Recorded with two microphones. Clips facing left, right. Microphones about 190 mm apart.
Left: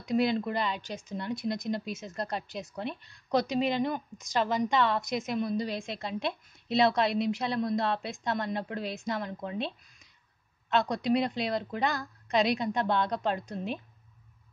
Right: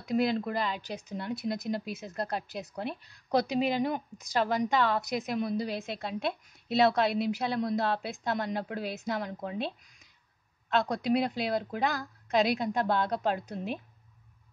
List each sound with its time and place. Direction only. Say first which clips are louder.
0.0 s a woman's voice: left 1 dB; centre (ahead or behind)
1.9 s speech: left 1 dB; 60° right (ahead or behind)
2.1 s a woman's voice: right 2 dB; 5° right (ahead or behind)
10.7 s a woman's voice: left 1 dB; centre (ahead or behind)